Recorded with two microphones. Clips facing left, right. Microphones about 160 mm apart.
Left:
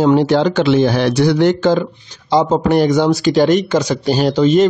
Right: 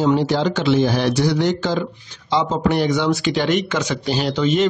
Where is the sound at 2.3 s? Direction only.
45° left (ahead or behind).